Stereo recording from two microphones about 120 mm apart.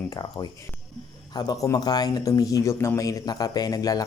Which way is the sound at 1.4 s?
35° left (ahead or behind).